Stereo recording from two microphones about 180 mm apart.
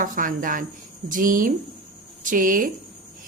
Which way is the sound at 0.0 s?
50° right (ahead or behind).